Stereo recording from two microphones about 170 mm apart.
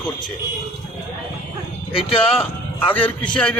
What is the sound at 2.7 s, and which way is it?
Speech, 10° left (ahead or behind).